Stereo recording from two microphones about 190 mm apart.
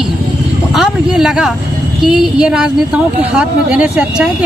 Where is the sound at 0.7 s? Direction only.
5° right (ahead or behind).